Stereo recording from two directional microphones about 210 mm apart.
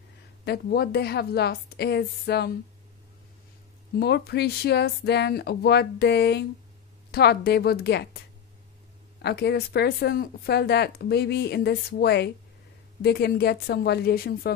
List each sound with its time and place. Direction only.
0.5 s speech: 50° left (ahead or behind)
4.0 s speech: 50° left (ahead or behind)
9.2 s speech: 50° left (ahead or behind)